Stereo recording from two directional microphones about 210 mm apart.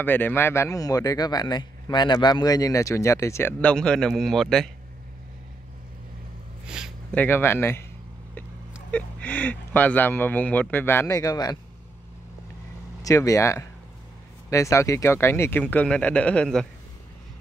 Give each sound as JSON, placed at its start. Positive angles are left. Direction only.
{"t": 0.0, "sound": "a man's voice", "side_deg": 10}
{"t": 6.6, "sound": "a sound", "side_deg": -5}
{"t": 7.2, "sound": "a man's voice", "side_deg": 10}
{"t": 8.9, "sound": "a man's voice", "side_deg": 5}
{"t": 13.0, "sound": "a man's voice", "side_deg": 15}